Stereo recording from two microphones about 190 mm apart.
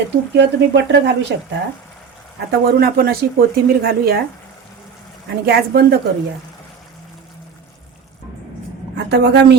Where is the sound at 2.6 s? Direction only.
55° right (ahead or behind).